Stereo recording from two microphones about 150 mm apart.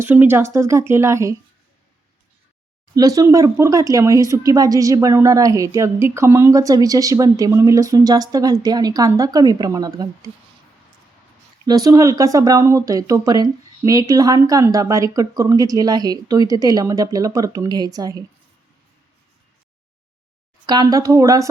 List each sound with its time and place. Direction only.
0.0 s speech: 15° right (ahead or behind)
2.9 s speech: 25° right (ahead or behind)
11.6 s speech: 25° right (ahead or behind)
20.7 s speech: 25° right (ahead or behind)